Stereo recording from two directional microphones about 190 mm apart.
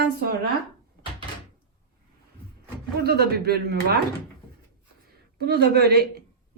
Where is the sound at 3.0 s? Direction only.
55° right (ahead or behind).